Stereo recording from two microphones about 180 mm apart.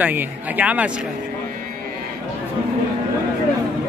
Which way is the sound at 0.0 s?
10° right (ahead or behind).